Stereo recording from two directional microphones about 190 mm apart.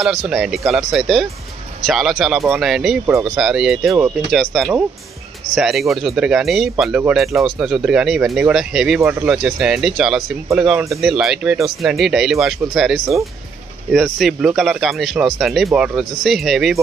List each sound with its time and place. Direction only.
0.0 s speech: centre (ahead or behind)